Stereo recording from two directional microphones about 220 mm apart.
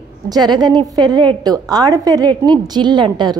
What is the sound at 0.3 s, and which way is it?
A woman's voice, 20° right (ahead or behind).